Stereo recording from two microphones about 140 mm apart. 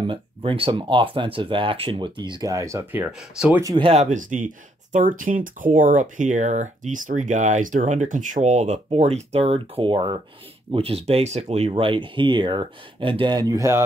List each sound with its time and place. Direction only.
0.0 s speech: 35° right (ahead or behind); by 3.6 s 5° right (ahead or behind)
3.8 s speech: 50° right (ahead or behind); by 13.8 s 20° right (ahead or behind)